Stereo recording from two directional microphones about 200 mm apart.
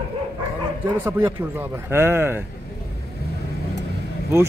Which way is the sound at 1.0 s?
10° right (ahead or behind).